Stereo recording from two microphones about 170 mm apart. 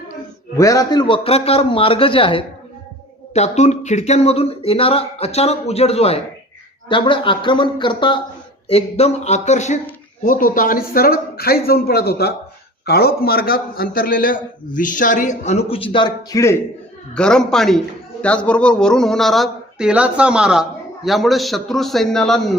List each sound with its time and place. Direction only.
0.5 s speech: 20° left (ahead or behind)
8.7 s a man's voice: 40° left (ahead or behind); by 16.6 s 20° left (ahead or behind)
17.2 s speech: 5° left (ahead or behind)